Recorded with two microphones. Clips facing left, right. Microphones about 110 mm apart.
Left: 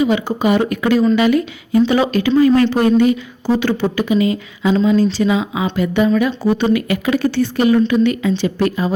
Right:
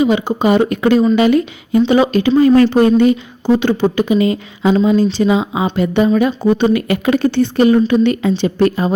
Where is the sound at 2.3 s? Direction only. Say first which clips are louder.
Right 3 dB; 35° right (ahead or behind).